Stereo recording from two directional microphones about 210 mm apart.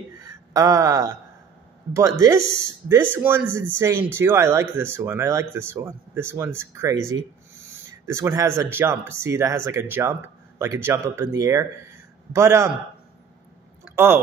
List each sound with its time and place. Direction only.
0.3 s speech: 15° right (ahead or behind)
8.1 s speech: 15° right (ahead or behind)
13.9 s speech: 10° right (ahead or behind)